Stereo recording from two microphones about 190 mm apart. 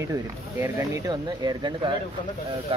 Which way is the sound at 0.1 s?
15° right (ahead or behind).